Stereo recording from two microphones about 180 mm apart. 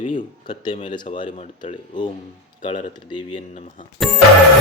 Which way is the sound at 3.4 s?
40° left (ahead or behind).